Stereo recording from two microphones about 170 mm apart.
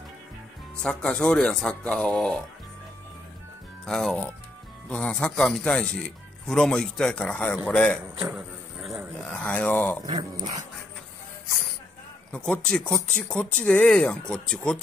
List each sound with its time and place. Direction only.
0.8 s speech: 5° left (ahead or behind)
3.8 s a man's voice: 5° left (ahead or behind)
8.2 s a man's voice: 5° right (ahead or behind)
9.3 s a man's voice: 10° left (ahead or behind)
10.0 s speech: 30° right (ahead or behind)
12.3 s speech: 5° left (ahead or behind)